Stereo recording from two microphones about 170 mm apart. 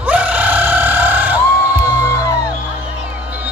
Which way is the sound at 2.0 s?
20° left (ahead or behind).